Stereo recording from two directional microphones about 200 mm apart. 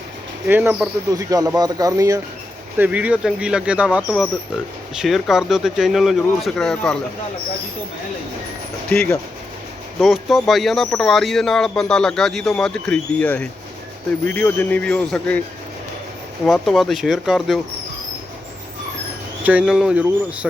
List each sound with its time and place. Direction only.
0.4 s speech: 10° right (ahead or behind)
10.0 s speech: centre (ahead or behind)
16.5 s speech: centre (ahead or behind)
19.5 s speech: 5° right (ahead or behind)